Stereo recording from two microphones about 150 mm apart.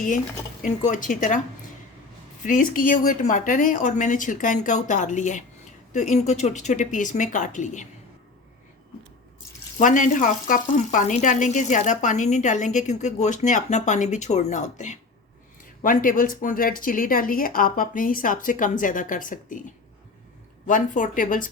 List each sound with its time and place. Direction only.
0.6 s speech: 55° left (ahead or behind)
2.4 s speech: 65° left (ahead or behind)
9.7 s speech: 60° left (ahead or behind)
15.8 s speech: 65° left (ahead or behind)
20.7 s speech: 60° left (ahead or behind)